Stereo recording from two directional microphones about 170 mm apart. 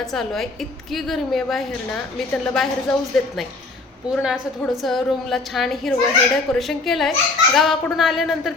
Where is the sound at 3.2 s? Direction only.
Centre (ahead or behind).